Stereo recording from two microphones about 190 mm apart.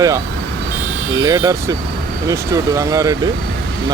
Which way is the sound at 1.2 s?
20° right (ahead or behind).